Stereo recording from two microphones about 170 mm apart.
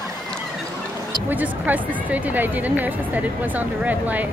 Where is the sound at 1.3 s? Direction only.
10° right (ahead or behind).